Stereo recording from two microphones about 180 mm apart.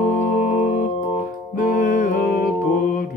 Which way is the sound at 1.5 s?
45° left (ahead or behind).